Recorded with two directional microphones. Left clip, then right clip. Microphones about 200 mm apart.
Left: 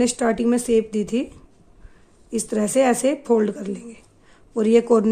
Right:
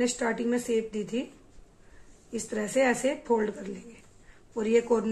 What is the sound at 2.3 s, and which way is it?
A man's voice, 60° left (ahead or behind).